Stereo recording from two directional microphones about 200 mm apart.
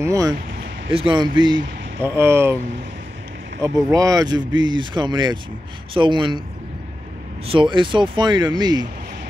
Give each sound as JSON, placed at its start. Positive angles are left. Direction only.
{"t": 0.0, "sound": "speech", "side_deg": -15}
{"t": 3.6, "sound": "speech", "side_deg": -15}
{"t": 7.4, "sound": "speech", "side_deg": -25}